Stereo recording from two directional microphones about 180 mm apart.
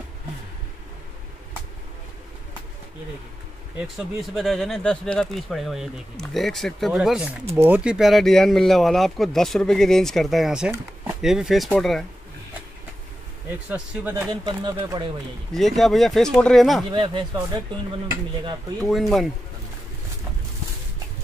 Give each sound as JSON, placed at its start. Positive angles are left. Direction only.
{"t": 3.7, "sound": "speech", "side_deg": 0}
{"t": 14.4, "sound": "speech", "side_deg": -25}
{"t": 15.5, "sound": "speech", "side_deg": 0}
{"t": 16.9, "sound": "speech", "side_deg": -30}
{"t": 18.9, "sound": "speech", "side_deg": 0}